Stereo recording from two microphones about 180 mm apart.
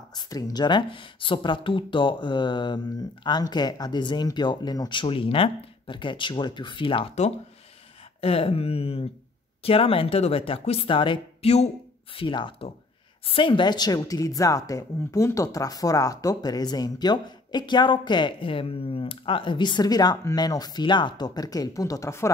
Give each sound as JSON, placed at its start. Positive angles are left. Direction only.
{"t": 0.1, "sound": "speech", "side_deg": 20}